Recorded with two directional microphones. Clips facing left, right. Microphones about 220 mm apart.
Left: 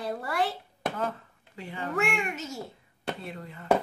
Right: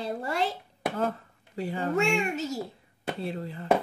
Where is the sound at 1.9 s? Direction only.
30° right (ahead or behind).